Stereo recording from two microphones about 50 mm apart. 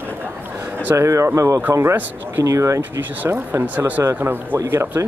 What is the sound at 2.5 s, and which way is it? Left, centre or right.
Speech, right.